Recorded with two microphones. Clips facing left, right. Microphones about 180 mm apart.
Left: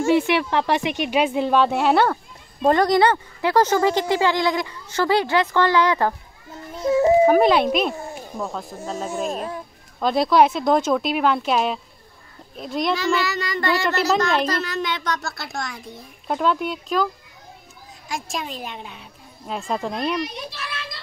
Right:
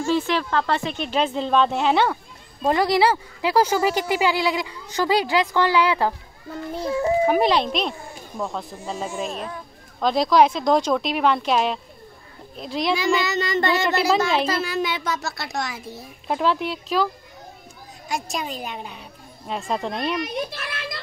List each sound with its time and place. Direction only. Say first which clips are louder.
0.1 s a woman's voice: left 2 dB; 15° left (ahead or behind); by 6.1 s 10° right (ahead or behind)
6.9 s a child's voice: left 6 dB; 20° left (ahead or behind)
7.2 s speech: left 4 dB; 5° left (ahead or behind)
12.9 s speech: right 3 dB; 15° right (ahead or behind)
13.8 s speech: even; 5° right (ahead or behind)
20.2 s a child's voice: right 5 dB; 50° right (ahead or behind)